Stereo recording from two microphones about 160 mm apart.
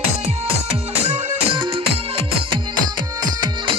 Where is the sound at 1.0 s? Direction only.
40° right (ahead or behind).